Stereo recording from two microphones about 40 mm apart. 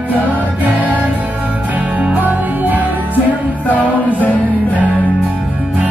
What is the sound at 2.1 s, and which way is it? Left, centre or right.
Music, right.